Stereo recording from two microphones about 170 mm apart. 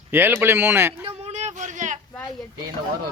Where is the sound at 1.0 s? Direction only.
40° right (ahead or behind).